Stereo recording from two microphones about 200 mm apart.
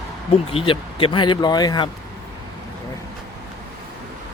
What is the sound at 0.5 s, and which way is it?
Speech, 25° left (ahead or behind).